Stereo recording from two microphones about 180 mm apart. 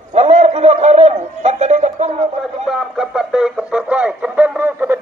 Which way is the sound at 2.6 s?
Centre (ahead or behind).